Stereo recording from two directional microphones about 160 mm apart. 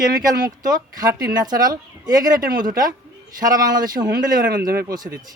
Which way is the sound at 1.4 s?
25° right (ahead or behind).